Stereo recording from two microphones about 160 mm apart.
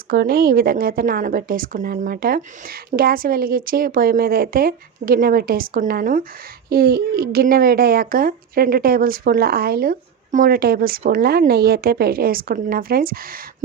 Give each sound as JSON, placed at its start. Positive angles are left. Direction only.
{"t": 0.1, "sound": "a woman's voice", "side_deg": -70}